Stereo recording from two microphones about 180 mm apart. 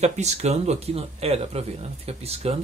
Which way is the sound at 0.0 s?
40° right (ahead or behind).